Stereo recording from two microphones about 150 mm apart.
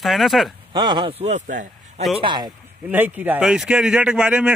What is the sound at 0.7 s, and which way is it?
A man's voice, 30° right (ahead or behind).